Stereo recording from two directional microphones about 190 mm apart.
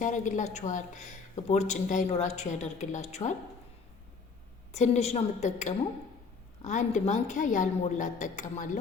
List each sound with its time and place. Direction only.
0.0 s speech: 40° left (ahead or behind)
4.7 s speech: 35° left (ahead or behind)